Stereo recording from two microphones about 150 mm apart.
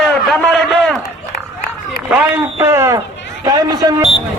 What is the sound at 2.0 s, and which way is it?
A man's voice, 10° right (ahead or behind).